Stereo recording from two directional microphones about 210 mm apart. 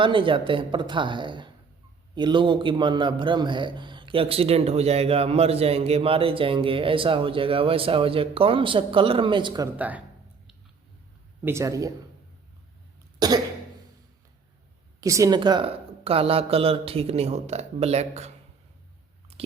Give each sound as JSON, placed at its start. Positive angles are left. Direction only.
{"t": 0.0, "sound": "a man's voice", "side_deg": -25}
{"t": 9.7, "sound": "speech", "side_deg": -5}
{"t": 11.4, "sound": "speech", "side_deg": -15}
{"t": 13.1, "sound": "cough", "side_deg": -20}
{"t": 15.0, "sound": "a man's voice", "side_deg": -15}
{"t": 19.3, "sound": "chewing", "side_deg": -30}